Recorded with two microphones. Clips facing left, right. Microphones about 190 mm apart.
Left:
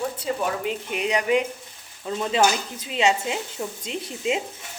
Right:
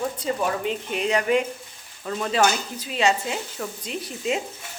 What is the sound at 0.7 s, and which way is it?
Speech, 10° left (ahead or behind).